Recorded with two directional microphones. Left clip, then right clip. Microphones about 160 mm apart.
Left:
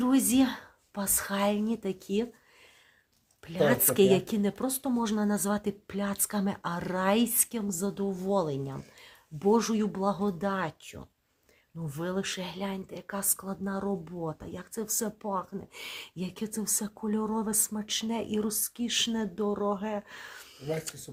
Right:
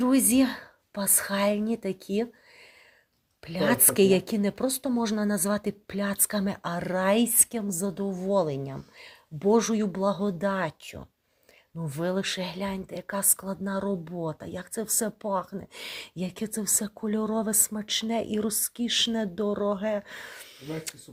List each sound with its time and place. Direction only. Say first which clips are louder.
0.0 s speech: right 3 dB; 15° right (ahead or behind)
3.4 s a woman's voice: even; 20° right (ahead or behind)